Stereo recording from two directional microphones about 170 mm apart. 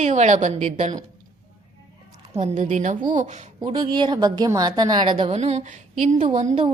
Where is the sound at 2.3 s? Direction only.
45° right (ahead or behind).